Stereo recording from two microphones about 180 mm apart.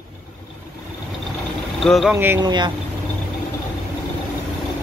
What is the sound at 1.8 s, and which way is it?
Speech, centre (ahead or behind).